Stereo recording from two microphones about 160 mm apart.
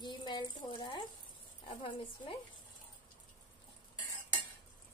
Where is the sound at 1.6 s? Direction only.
30° left (ahead or behind).